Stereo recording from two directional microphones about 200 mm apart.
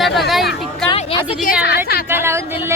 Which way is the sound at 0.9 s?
30° left (ahead or behind).